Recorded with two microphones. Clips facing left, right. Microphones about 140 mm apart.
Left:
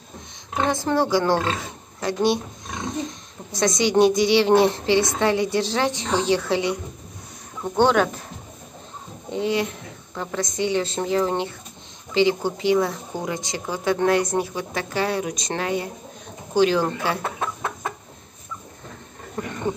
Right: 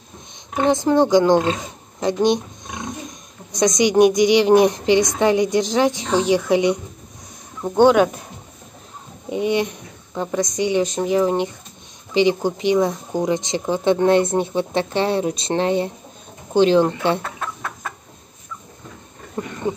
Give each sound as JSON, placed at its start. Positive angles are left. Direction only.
{"t": 0.7, "sound": "speech", "side_deg": -20}
{"t": 2.0, "sound": "a sound", "side_deg": -20}
{"t": 3.5, "sound": "a woman's voice", "side_deg": -20}
{"t": 9.3, "sound": "a woman's voice", "side_deg": -15}
{"t": 17.2, "sound": "chicken", "side_deg": 20}
{"t": 19.4, "sound": "a sound", "side_deg": -25}